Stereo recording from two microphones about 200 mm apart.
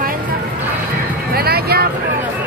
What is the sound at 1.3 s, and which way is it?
Speech, 50° right (ahead or behind).